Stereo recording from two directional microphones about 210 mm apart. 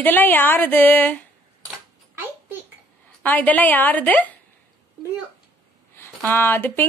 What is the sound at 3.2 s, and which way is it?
A woman's voice, 10° left (ahead or behind).